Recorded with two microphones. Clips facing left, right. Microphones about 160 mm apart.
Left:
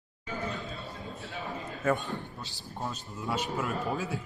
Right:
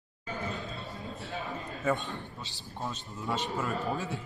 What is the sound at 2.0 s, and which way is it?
Speech, 20° right (ahead or behind).